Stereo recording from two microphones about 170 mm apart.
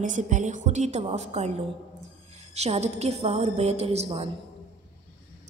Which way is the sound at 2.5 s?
40° right (ahead or behind).